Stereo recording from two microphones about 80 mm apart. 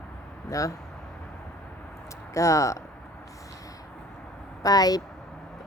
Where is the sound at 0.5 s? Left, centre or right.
Left.